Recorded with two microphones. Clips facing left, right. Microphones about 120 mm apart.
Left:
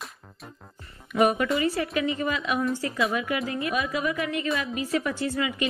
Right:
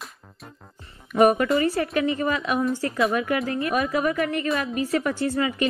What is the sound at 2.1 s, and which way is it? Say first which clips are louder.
A woman's voice: right 3 dB; 45° right (ahead or behind).